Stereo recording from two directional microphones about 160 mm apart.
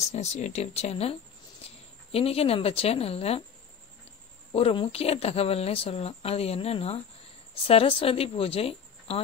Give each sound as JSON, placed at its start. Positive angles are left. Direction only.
{"t": 0.1, "sound": "speech", "side_deg": 45}
{"t": 1.6, "sound": "a sound", "side_deg": 40}
{"t": 2.1, "sound": "speech", "side_deg": 35}
{"t": 4.5, "sound": "speech", "side_deg": 35}